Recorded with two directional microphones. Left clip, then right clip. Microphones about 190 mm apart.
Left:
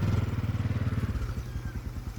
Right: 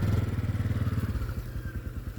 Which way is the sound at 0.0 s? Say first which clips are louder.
Even; 60° right (ahead or behind).